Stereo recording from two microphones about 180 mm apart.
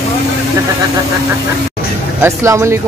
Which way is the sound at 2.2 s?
15° right (ahead or behind).